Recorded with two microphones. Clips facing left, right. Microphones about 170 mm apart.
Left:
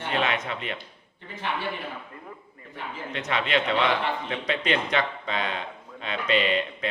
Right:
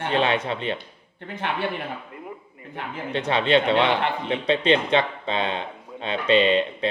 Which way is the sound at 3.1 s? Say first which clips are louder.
Right 6 dB; 30° right (ahead or behind).